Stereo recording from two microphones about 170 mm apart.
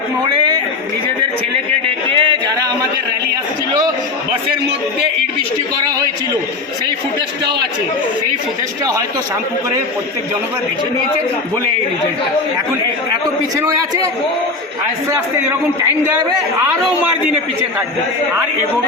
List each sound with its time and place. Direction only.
2.0 s music: 30° right (ahead or behind)
8.8 s a man's voice: 20° right (ahead or behind)
13.6 s a man's voice: 20° right (ahead or behind)